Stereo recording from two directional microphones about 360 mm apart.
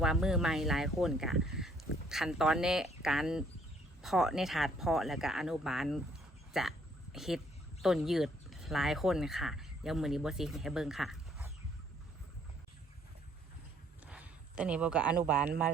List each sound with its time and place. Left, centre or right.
0.0 s speech: centre
14.1 s speech: centre